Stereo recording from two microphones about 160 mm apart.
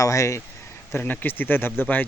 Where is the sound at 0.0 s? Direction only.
20° left (ahead or behind).